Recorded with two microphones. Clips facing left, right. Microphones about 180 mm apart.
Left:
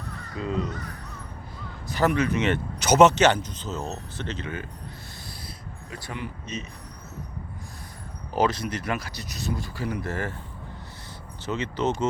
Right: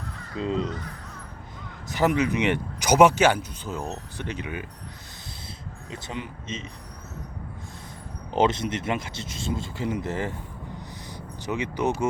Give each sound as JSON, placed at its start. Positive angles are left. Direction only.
{"t": 0.3, "sound": "speech", "side_deg": -25}
{"t": 1.9, "sound": "speech", "side_deg": -15}
{"t": 5.9, "sound": "speech", "side_deg": -20}
{"t": 8.3, "sound": "speech", "side_deg": -25}
{"t": 11.4, "sound": "speech", "side_deg": -15}